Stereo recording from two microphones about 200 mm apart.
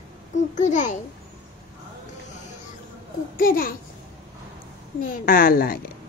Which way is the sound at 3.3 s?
45° left (ahead or behind).